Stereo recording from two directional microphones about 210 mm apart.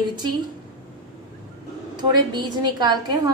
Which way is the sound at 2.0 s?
20° right (ahead or behind).